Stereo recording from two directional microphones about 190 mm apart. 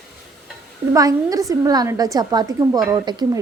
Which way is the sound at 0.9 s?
20° right (ahead or behind).